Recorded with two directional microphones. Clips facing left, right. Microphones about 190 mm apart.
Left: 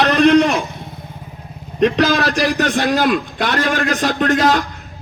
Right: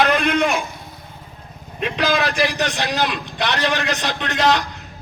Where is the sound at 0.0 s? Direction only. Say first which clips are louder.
Left 6 dB; 35° left (ahead or behind).